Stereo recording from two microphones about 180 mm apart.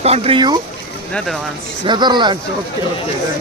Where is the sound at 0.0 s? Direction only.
35° right (ahead or behind).